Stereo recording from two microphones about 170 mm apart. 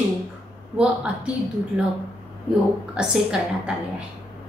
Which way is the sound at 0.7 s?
5° right (ahead or behind).